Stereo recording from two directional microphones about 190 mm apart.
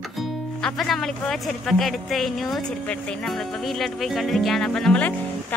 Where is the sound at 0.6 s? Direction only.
Centre (ahead or behind).